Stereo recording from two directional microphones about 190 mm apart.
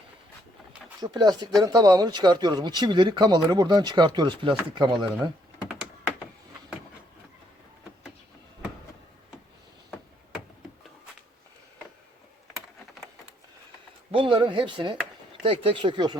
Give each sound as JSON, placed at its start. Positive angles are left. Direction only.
{"t": 0.9, "sound": "speech", "side_deg": -20}
{"t": 14.1, "sound": "a sound", "side_deg": -25}
{"t": 15.4, "sound": "speech", "side_deg": -25}